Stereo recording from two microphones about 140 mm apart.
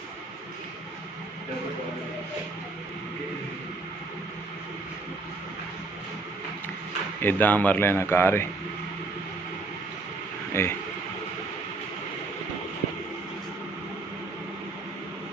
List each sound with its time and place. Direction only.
7.2 s speech: 15° left (ahead or behind)
10.6 s speech: 20° left (ahead or behind)